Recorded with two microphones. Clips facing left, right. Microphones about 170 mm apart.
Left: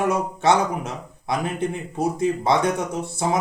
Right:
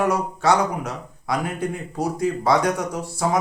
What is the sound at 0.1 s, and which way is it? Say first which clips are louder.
Speech: even; 25° left (ahead or behind).